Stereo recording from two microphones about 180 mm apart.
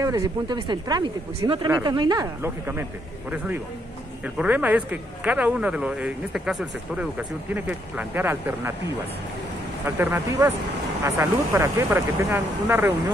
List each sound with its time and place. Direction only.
0.0 s speech: 20° right (ahead or behind)
9.8 s speech: 10° right (ahead or behind)